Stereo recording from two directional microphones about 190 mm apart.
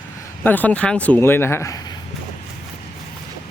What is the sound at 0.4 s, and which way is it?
A man's voice, 10° left (ahead or behind).